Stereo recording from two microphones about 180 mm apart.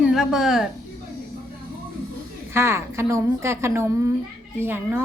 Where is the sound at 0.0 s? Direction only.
5° right (ahead or behind).